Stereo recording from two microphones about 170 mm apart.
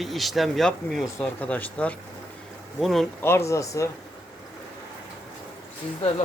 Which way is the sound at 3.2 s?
15° left (ahead or behind).